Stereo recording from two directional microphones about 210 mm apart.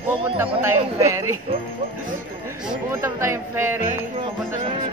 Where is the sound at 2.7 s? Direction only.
10° right (ahead or behind).